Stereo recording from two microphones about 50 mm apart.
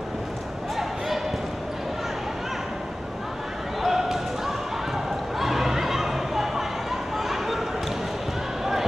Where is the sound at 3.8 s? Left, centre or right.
Centre.